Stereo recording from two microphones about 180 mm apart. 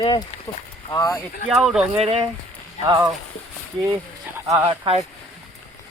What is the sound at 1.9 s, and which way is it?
Speech, 35° right (ahead or behind).